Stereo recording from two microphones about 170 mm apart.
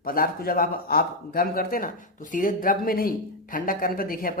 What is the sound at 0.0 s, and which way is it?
Speech, 60° left (ahead or behind).